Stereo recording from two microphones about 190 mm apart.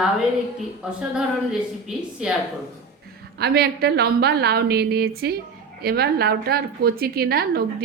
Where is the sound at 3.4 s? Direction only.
55° right (ahead or behind).